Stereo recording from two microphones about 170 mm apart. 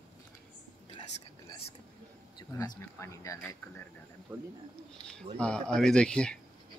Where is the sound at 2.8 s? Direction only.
15° left (ahead or behind).